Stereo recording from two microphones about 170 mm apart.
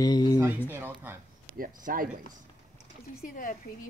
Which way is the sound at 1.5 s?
55° right (ahead or behind).